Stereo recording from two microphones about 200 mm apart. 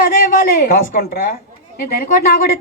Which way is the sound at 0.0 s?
45° left (ahead or behind).